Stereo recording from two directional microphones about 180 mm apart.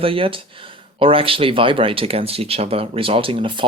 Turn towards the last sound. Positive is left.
turn(degrees=-30)  # may be behind; listen again after turning